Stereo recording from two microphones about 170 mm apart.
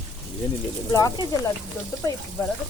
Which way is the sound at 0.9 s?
20° left (ahead or behind).